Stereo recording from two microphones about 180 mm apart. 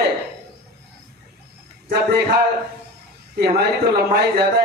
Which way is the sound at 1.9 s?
60° right (ahead or behind).